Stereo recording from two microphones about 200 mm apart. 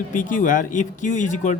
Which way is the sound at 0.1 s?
40° left (ahead or behind).